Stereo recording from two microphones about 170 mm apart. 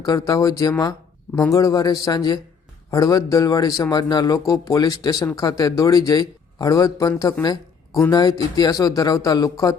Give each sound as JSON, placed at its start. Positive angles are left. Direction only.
{"t": 0.0, "sound": "speech", "side_deg": 20}